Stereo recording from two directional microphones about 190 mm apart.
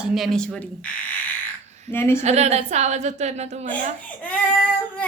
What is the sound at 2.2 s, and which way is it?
A woman's voice, 35° right (ahead or behind).